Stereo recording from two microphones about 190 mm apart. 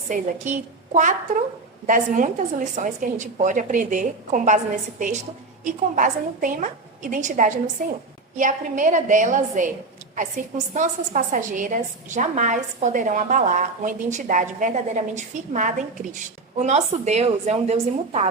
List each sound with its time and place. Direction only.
0.1 s a woman's voice: 40° right (ahead or behind)